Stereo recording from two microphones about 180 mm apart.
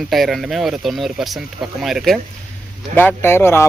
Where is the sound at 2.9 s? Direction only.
10° left (ahead or behind).